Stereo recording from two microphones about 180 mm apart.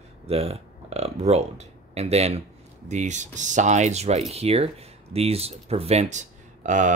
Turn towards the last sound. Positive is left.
turn(degrees=-45)  # may be behind; listen again after turning